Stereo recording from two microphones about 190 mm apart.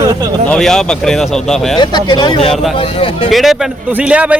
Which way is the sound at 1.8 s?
25° left (ahead or behind).